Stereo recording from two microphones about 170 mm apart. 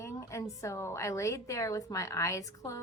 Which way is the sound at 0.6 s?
15° left (ahead or behind).